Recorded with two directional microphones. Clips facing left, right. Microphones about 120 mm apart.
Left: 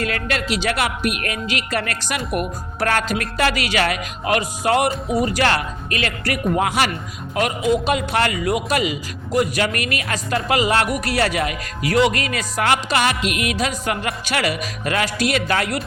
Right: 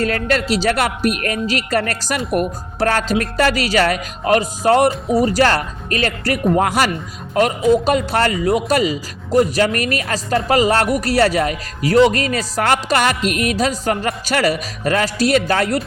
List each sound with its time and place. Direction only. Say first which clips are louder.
0.0 s a man's voice: right 5 dB; 40° right (ahead or behind)